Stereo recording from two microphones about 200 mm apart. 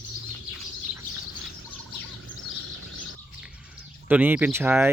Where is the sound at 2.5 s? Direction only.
80° right.